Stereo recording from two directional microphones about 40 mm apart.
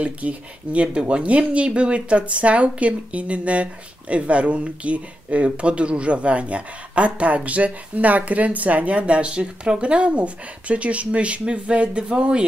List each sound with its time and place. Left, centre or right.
0.0 s speech: right